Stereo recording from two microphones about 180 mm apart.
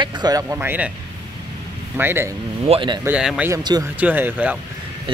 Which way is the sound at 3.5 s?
20° right (ahead or behind).